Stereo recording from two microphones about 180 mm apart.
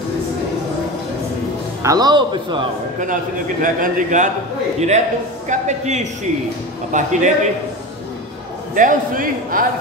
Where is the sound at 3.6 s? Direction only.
45° right (ahead or behind).